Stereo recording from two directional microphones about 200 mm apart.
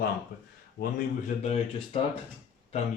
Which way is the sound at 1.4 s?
30° left (ahead or behind).